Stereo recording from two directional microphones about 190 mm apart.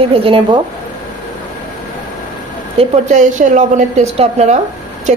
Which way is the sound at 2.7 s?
35° right (ahead or behind).